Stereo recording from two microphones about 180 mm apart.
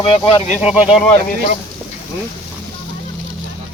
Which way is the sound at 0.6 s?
5° right (ahead or behind).